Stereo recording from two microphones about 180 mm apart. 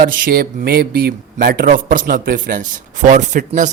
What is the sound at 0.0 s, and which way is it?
Speech, 55° right (ahead or behind).